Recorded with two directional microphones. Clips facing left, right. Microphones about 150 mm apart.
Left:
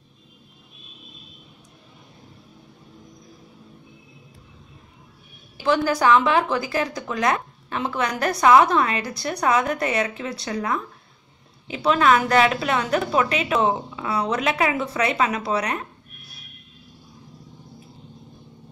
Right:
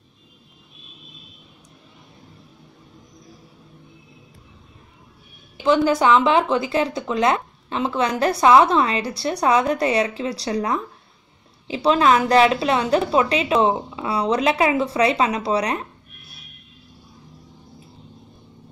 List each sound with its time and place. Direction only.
5.6 s speech: 20° right (ahead or behind)